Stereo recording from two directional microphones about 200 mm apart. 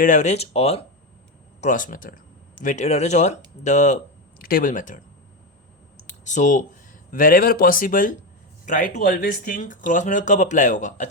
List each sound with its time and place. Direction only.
0.0 s speech: 35° left (ahead or behind)
1.6 s speech: 40° left (ahead or behind)
6.2 s speech: 40° left (ahead or behind)